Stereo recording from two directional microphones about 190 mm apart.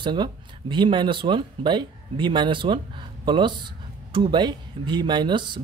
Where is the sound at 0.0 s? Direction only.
25° right (ahead or behind).